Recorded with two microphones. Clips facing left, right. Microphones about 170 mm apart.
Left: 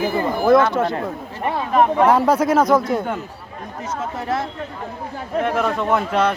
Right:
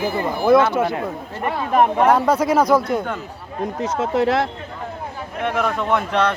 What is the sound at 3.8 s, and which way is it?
Speech, 80° right.